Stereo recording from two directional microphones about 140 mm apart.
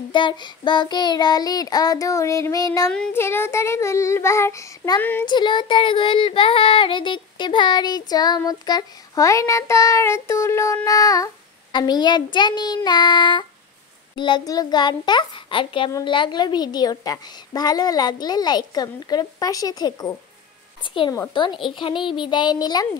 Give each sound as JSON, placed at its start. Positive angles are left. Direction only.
{"t": 0.1, "sound": "child singing", "side_deg": 35}
{"t": 5.2, "sound": "child singing", "side_deg": 35}
{"t": 20.8, "sound": "child singing", "side_deg": 35}